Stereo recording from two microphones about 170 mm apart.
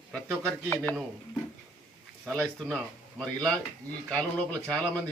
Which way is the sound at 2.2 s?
Centre (ahead or behind).